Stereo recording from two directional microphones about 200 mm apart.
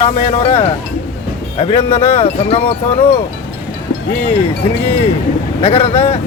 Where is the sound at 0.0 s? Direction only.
30° left (ahead or behind).